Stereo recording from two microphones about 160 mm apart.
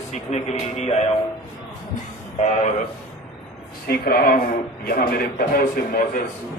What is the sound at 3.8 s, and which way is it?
A man's voice, 70° left (ahead or behind).